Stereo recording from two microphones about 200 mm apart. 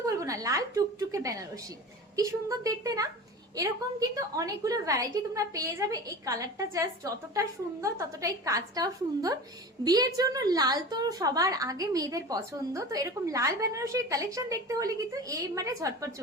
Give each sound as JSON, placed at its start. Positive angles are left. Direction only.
{"t": 0.0, "sound": "a woman's voice", "side_deg": -15}